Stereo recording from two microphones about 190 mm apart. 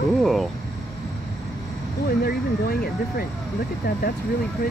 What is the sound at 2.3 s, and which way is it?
Speech, 55° left (ahead or behind).